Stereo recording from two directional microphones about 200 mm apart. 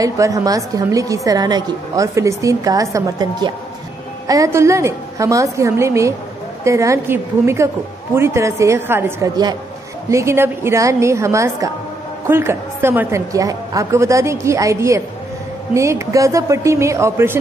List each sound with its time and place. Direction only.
0.0 s a woman's voice: 15° right (ahead or behind)